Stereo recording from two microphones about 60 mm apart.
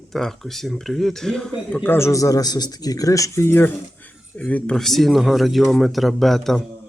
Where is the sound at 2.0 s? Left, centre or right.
Left.